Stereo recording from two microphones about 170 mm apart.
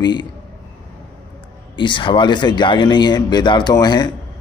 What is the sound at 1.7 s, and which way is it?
A man's voice, 30° left (ahead or behind).